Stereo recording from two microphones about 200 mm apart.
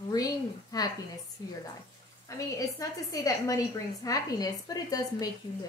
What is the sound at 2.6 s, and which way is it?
A woman's voice, 15° left (ahead or behind).